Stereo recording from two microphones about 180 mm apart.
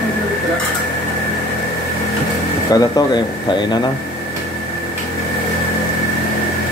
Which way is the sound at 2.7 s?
25° left (ahead or behind).